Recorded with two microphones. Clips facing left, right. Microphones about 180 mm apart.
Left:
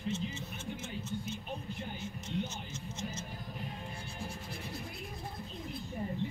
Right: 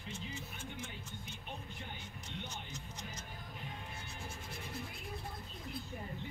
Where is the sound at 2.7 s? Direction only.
25° left (ahead or behind).